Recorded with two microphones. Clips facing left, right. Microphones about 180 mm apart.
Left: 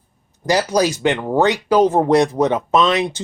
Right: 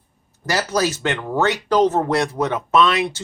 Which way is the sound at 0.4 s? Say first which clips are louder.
Left 4 dB; 15° left (ahead or behind).